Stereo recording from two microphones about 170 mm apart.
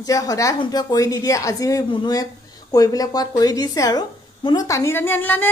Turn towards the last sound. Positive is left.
turn(degrees=10)  # may be behind; listen again after turning